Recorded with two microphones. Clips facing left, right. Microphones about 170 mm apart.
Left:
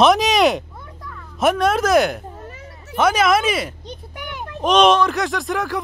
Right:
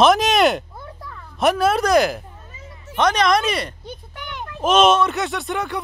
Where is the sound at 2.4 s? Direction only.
70° left (ahead or behind).